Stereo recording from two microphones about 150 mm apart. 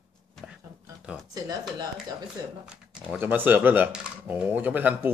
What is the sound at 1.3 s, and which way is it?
Speech, 25° right (ahead or behind).